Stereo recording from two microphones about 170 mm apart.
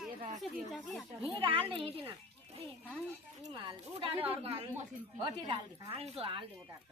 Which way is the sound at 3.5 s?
30° right (ahead or behind).